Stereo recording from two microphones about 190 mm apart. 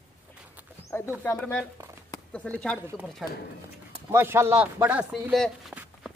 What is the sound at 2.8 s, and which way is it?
Speech, 10° right (ahead or behind).